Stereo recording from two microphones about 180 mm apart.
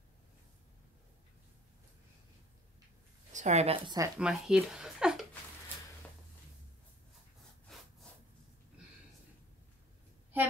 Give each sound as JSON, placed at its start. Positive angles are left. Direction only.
{"t": 3.3, "sound": "a woman's voice", "side_deg": -40}
{"t": 4.2, "sound": "speech", "side_deg": -5}
{"t": 7.7, "sound": "sawing", "side_deg": 0}